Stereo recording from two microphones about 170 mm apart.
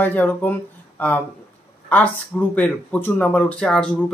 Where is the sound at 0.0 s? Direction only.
10° left (ahead or behind).